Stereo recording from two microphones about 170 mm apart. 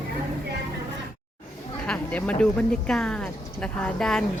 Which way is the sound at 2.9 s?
5° left (ahead or behind).